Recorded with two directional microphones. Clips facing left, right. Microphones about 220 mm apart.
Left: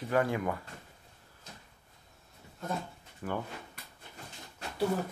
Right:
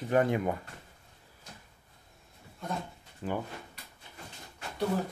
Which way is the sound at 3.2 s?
20° right (ahead or behind).